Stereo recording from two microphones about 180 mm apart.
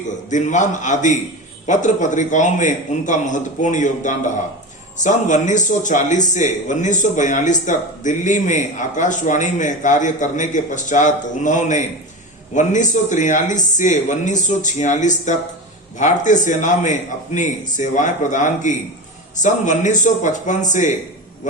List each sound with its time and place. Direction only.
0.3 s speech: 45° left (ahead or behind)